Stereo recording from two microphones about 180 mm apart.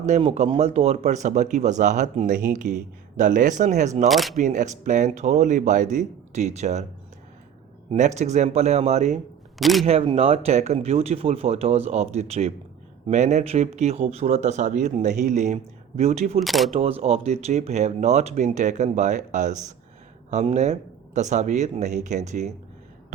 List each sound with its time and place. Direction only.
0.0 s speech: 35° right (ahead or behind)
4.1 s speech: centre (ahead or behind)
4.4 s speech: 40° right (ahead or behind)
7.9 s speech: 40° right (ahead or behind)
9.6 s speech: centre (ahead or behind)
9.8 s speech: 30° right (ahead or behind)
16.4 s speech: centre (ahead or behind)
16.7 s speech: 35° right (ahead or behind)